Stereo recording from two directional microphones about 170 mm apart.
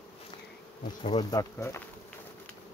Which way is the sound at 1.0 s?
25° left (ahead or behind).